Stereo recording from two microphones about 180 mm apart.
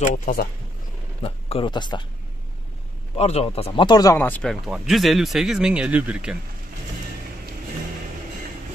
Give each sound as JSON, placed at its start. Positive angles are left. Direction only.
{"t": 0.0, "sound": "speech", "side_deg": 45}
{"t": 1.2, "sound": "speech", "side_deg": 30}
{"t": 3.2, "sound": "speech", "side_deg": 35}